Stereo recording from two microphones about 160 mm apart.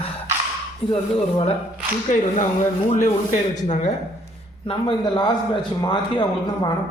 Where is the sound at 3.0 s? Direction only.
50° left (ahead or behind).